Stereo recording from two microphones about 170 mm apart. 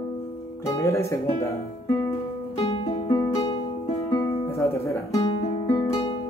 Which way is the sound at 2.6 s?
35° left (ahead or behind).